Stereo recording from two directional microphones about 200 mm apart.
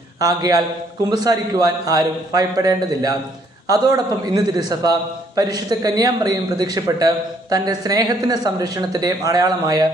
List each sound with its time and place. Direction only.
0.2 s a man's voice: 20° right (ahead or behind)